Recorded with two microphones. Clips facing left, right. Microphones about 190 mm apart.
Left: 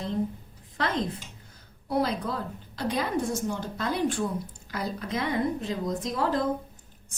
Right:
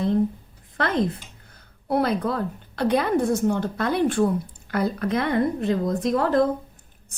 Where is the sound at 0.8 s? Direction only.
60° right (ahead or behind).